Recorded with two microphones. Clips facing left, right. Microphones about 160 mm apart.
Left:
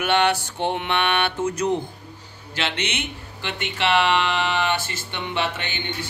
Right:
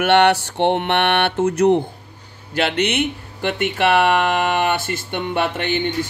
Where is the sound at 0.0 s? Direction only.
70° right (ahead or behind); by 5.7 s 50° right (ahead or behind).